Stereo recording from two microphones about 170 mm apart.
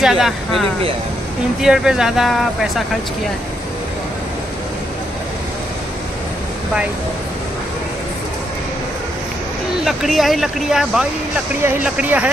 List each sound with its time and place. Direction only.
0.0 s speech: centre (ahead or behind)
9.8 s speech: centre (ahead or behind)